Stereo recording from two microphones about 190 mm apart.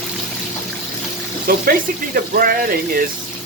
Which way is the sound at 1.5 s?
50° right (ahead or behind).